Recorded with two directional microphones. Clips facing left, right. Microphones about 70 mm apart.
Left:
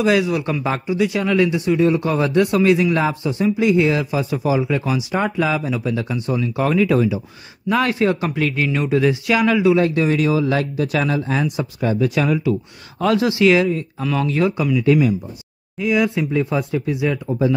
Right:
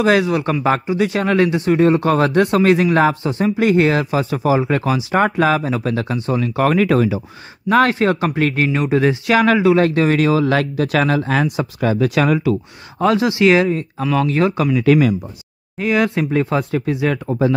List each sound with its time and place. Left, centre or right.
0.0 s a man's voice: right
0.8 s a man's voice: right
2.4 s a man's voice: right
6.1 s speech: right
6.4 s speech: right
7.7 s speech: right
9.8 s speech: right
13.0 s a man's voice: right
14.8 s speech: right
15.8 s a man's voice: right